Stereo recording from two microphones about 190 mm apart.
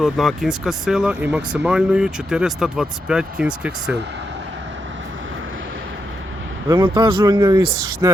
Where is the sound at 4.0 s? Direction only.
65° right (ahead or behind); by 5.8 s 90° right.